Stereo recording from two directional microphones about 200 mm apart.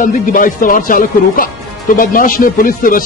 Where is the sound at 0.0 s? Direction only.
45° left (ahead or behind).